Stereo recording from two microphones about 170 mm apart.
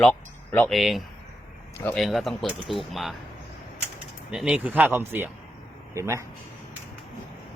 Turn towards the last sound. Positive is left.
turn(degrees=-15)  # may be behind; listen again after turning